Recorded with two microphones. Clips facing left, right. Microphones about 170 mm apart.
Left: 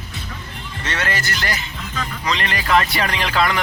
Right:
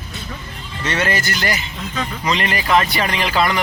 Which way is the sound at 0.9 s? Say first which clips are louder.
Right 4 dB; 15° right (ahead or behind).